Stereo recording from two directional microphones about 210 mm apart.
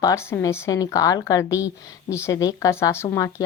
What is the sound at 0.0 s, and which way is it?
Speech, 15° left (ahead or behind).